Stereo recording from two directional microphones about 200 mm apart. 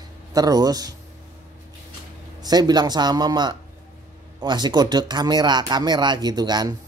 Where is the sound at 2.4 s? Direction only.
20° right (ahead or behind).